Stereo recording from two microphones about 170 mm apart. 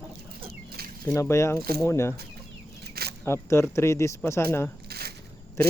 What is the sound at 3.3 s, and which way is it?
Speech, 15° left (ahead or behind).